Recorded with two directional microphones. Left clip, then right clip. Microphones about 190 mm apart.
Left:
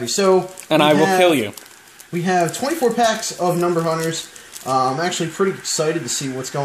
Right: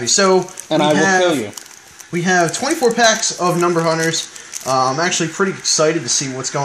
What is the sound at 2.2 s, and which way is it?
Speech, 20° right (ahead or behind).